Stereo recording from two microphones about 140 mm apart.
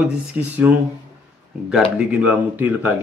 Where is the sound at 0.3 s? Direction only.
10° right (ahead or behind).